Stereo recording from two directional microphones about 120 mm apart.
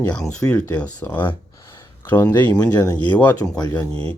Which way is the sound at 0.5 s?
10° left (ahead or behind).